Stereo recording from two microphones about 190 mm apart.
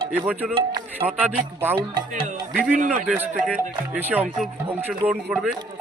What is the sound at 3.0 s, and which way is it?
Speech, 10° right (ahead or behind).